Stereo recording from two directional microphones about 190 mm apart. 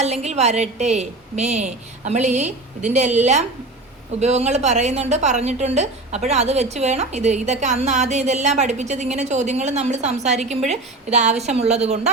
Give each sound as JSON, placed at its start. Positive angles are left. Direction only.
{"t": 0.0, "sound": "a woman's voice", "side_deg": -35}